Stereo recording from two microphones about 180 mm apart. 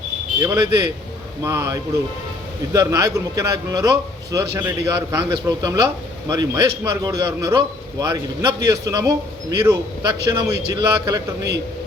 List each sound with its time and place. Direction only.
0.3 s a man's voice: 20° right (ahead or behind)